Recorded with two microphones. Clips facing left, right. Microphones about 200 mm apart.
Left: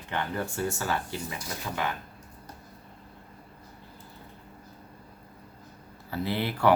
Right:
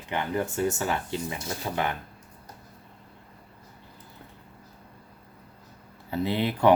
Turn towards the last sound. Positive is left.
turn(degrees=-20)  # may be behind; listen again after turning